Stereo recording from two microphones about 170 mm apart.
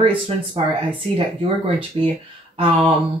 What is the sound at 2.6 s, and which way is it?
Speech, 35° right (ahead or behind).